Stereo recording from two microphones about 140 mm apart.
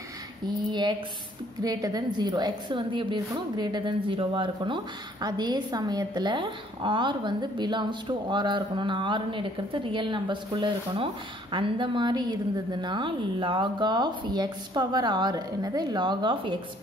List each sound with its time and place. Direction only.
0.7 s a woman's voice: 30° right (ahead or behind)